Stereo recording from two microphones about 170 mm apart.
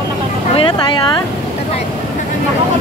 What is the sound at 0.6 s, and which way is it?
Speech, 30° left (ahead or behind).